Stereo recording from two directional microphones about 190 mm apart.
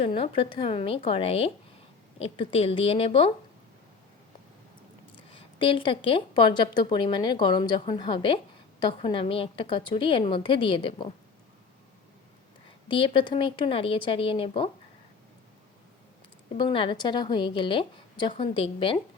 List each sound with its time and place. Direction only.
0.0 s a woman's voice: 30° left (ahead or behind)
5.3 s speech: 25° left (ahead or behind)
12.9 s speech: 25° left (ahead or behind)
16.6 s speech: 25° left (ahead or behind)